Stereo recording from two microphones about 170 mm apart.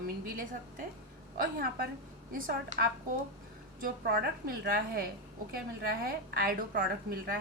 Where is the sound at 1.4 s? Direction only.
60° right (ahead or behind).